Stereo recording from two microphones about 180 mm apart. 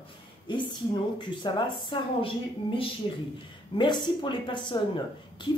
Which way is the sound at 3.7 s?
25° left (ahead or behind).